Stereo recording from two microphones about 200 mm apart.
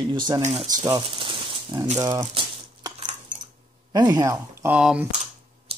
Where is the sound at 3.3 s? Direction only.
40° right (ahead or behind).